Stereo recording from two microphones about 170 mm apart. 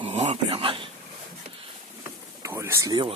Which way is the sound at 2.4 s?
15° right (ahead or behind).